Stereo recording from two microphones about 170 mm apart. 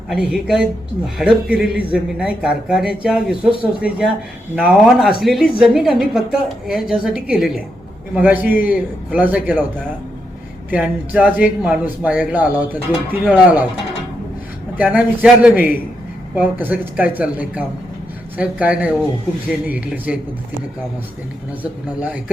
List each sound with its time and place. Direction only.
0.1 s a man's voice: 5° right (ahead or behind)
10.7 s speech: 10° right (ahead or behind)
14.8 s speech: 10° right (ahead or behind)
21.6 s speech: 10° right (ahead or behind)